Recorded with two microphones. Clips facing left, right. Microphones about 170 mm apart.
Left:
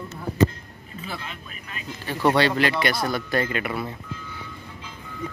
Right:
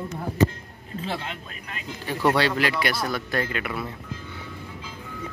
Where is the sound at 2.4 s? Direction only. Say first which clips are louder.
Left 2 dB; 5° right (ahead or behind).